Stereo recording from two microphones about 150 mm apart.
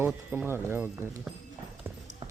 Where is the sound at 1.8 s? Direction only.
15° right (ahead or behind).